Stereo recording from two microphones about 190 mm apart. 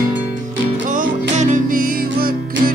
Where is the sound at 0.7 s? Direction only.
40° right (ahead or behind).